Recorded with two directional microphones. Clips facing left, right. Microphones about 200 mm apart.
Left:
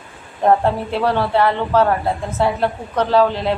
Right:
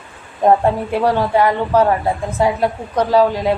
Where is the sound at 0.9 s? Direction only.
15° right (ahead or behind).